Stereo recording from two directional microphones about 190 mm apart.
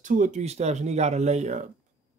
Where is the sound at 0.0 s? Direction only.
40° right (ahead or behind).